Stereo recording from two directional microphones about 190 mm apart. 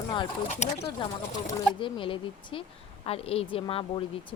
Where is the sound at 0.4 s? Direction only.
35° left (ahead or behind).